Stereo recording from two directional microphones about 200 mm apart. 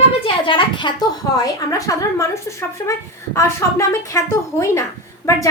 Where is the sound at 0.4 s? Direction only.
25° left (ahead or behind).